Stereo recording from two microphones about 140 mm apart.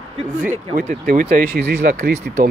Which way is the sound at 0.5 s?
70° right (ahead or behind).